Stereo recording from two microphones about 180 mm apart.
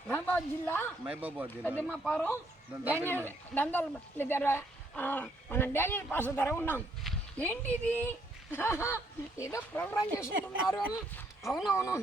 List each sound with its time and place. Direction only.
0.1 s a woman's voice: 10° left (ahead or behind)
1.0 s speech: 10° right (ahead or behind)
1.6 s speech: 10° left (ahead or behind)
10.3 s speech: 90° right
11.4 s speech: centre (ahead or behind)
11.7 s speech: 15° left (ahead or behind)